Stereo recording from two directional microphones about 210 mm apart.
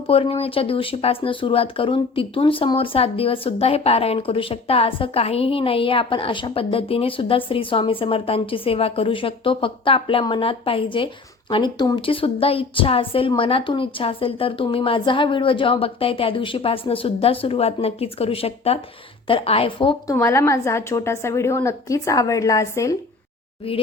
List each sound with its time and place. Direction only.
0.1 s speech: 25° left (ahead or behind)
20.1 s a woman's voice: 15° left (ahead or behind)